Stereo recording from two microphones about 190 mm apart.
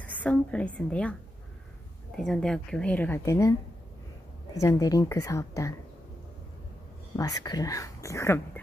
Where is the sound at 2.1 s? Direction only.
Centre (ahead or behind).